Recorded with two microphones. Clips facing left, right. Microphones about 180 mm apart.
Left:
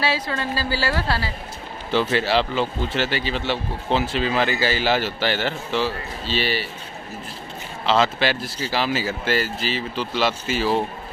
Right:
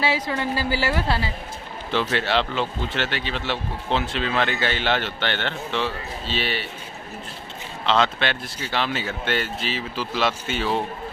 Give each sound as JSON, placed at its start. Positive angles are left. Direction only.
{"t": 0.0, "sound": "a woman's voice", "side_deg": -15}
{"t": 1.9, "sound": "speech", "side_deg": 0}
{"t": 7.8, "sound": "speech", "side_deg": 5}